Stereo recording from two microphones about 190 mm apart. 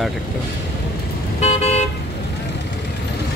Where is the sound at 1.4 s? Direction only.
35° left (ahead or behind).